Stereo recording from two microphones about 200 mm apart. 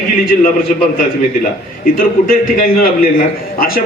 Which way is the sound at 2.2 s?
45° left (ahead or behind).